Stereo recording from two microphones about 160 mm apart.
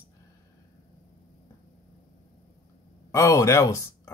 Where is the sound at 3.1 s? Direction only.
20° left (ahead or behind).